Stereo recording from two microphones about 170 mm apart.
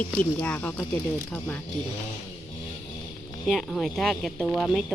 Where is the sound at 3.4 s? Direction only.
Centre (ahead or behind).